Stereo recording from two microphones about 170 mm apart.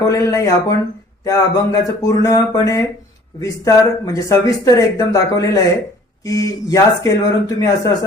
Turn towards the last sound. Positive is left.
turn(degrees=20)  # may be behind; listen again after turning